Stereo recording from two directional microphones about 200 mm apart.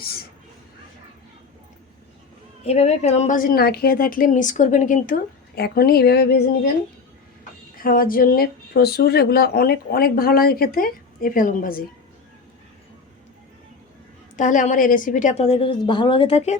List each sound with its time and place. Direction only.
2.6 s speech: 30° left (ahead or behind); by 6.4 s 55° left (ahead or behind)
7.8 s speech: 45° left (ahead or behind)
14.3 s a woman's voice: 40° left (ahead or behind)